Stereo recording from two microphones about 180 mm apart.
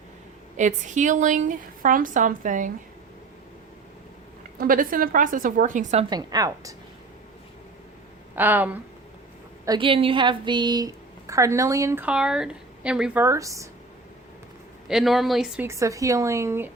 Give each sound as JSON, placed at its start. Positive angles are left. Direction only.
{"t": 0.5, "sound": "a woman's voice", "side_deg": -40}
{"t": 4.5, "sound": "a woman's voice", "side_deg": -50}
{"t": 6.1, "sound": "a woman's voice", "side_deg": -20}
{"t": 8.4, "sound": "a woman's voice", "side_deg": -10}
{"t": 9.6, "sound": "a woman's voice", "side_deg": -30}
{"t": 13.2, "sound": "a woman's voice", "side_deg": -15}
{"t": 14.8, "sound": "speech", "side_deg": 0}
{"t": 15.6, "sound": "a woman's voice", "side_deg": -15}